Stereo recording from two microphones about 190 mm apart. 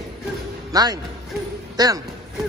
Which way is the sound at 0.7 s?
20° right (ahead or behind).